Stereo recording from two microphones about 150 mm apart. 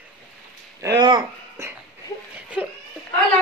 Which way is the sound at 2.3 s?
10° right (ahead or behind).